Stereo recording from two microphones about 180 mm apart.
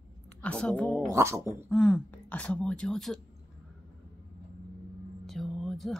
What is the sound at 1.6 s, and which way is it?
Speech, 5° left (ahead or behind).